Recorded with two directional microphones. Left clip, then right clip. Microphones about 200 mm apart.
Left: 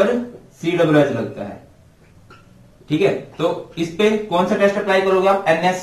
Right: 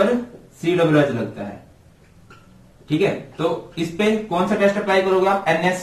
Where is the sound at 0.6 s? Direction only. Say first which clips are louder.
Left 1 dB; 15° left (ahead or behind).